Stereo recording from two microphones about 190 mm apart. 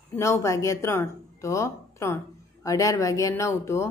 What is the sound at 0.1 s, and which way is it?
Speech, 15° left (ahead or behind).